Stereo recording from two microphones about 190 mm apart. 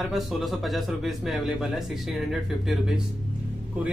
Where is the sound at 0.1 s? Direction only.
Centre (ahead or behind).